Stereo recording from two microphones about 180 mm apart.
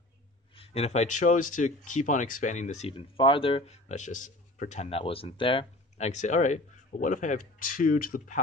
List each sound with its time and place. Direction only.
0.6 s speech: 35° left (ahead or behind)